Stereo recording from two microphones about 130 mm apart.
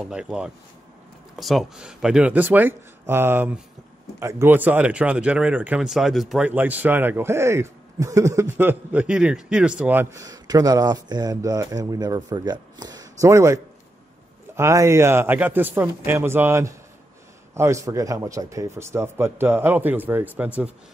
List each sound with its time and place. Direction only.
0.0 s a man's voice: 5° right (ahead or behind)
6.5 s a man's voice: 15° right (ahead or behind)
10.1 s speech: 30° right (ahead or behind); by 20.7 s 10° right (ahead or behind)